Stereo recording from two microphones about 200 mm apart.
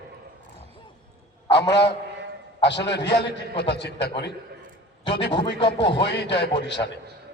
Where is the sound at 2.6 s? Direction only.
60° left (ahead or behind).